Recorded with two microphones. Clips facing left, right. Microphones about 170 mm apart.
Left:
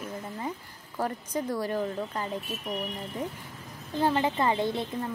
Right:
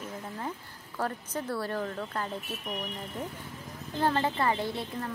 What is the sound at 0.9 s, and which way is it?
Speech, 10° left (ahead or behind).